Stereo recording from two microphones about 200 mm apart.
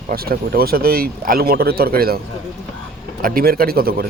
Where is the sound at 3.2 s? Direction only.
45° right (ahead or behind).